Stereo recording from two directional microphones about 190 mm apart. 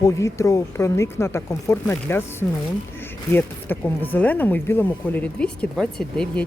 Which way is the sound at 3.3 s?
10° left (ahead or behind).